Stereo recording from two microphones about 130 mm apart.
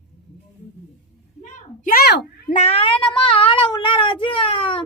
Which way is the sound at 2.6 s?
50° left (ahead or behind).